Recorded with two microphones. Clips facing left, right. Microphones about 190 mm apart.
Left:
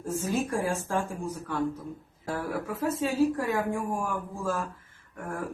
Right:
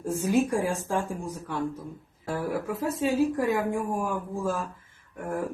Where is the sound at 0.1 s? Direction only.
15° right (ahead or behind).